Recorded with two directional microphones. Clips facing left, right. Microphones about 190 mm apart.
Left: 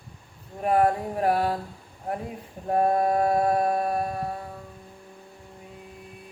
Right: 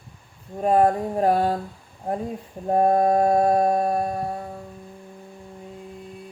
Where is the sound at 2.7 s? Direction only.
25° right (ahead or behind).